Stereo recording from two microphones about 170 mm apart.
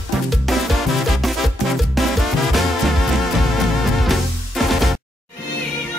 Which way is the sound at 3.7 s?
Centre (ahead or behind).